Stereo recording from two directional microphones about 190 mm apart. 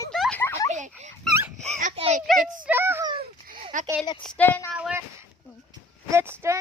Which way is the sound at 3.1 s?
50° right (ahead or behind).